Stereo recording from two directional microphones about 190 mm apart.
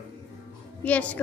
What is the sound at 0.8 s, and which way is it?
Speech, 5° left (ahead or behind).